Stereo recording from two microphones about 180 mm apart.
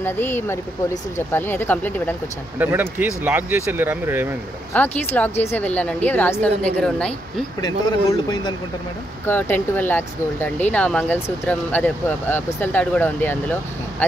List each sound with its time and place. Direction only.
0.0 s speech: 10° left (ahead or behind)
2.6 s speech: 10° right (ahead or behind)
4.7 s speech: 10° left (ahead or behind)
7.6 s speech: 25° left (ahead or behind)
9.2 s speech: 10° left (ahead or behind)